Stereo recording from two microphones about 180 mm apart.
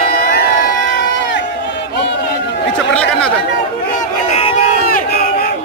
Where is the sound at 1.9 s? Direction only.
70° left (ahead or behind).